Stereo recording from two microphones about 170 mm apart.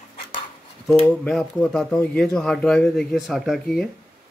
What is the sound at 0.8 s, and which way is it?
Speech, 5° left (ahead or behind).